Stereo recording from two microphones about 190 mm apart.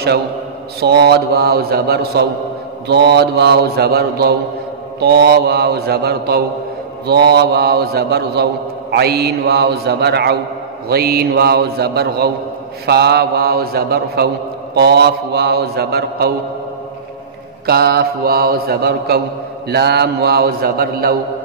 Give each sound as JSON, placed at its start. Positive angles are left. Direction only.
{"t": 0.7, "sound": "a man's voice", "side_deg": -60}
{"t": 17.6, "sound": "a man's voice", "side_deg": -55}